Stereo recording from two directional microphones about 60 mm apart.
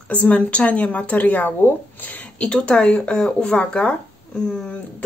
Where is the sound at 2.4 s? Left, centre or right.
Centre.